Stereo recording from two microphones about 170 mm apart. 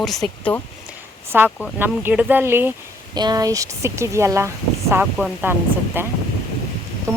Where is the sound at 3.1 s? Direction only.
25° right (ahead or behind).